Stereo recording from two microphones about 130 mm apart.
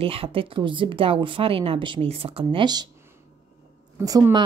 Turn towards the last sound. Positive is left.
turn(degrees=-30)  # may be behind; listen again after turning